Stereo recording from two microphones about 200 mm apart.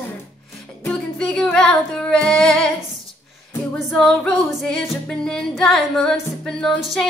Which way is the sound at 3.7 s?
5° left (ahead or behind).